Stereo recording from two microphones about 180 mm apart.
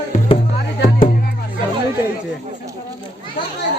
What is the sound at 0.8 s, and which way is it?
Music, 50° left (ahead or behind).